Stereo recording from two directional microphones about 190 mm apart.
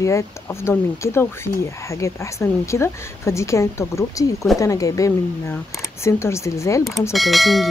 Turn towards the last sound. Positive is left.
turn(degrees=0)  # may be behind; listen again after turning